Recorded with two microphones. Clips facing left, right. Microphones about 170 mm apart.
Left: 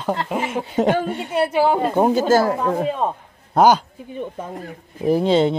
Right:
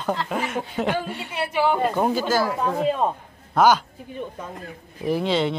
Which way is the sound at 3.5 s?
35° left (ahead or behind).